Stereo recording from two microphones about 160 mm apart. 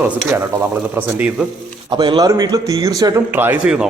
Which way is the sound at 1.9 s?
25° right (ahead or behind).